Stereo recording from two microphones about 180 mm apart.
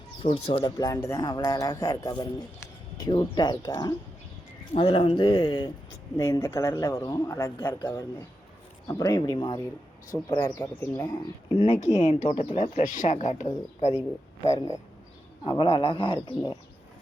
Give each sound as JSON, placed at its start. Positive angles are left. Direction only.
{"t": 0.2, "sound": "speech", "side_deg": 30}
{"t": 10.4, "sound": "speech", "side_deg": 10}
{"t": 11.6, "sound": "speech", "side_deg": 40}
{"t": 14.4, "sound": "speech", "side_deg": 15}
{"t": 15.4, "sound": "speech", "side_deg": 30}